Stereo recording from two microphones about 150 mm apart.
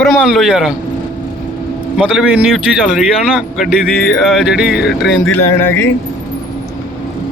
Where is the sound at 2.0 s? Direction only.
5° right (ahead or behind).